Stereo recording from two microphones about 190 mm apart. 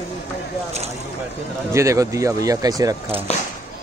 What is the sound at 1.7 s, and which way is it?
Speech, 15° right (ahead or behind).